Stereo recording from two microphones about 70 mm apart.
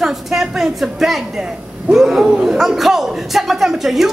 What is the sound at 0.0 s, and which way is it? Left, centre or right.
A man's voice, centre.